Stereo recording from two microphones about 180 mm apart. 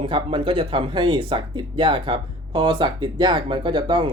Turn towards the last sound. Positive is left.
turn(degrees=-25)  # may be behind; listen again after turning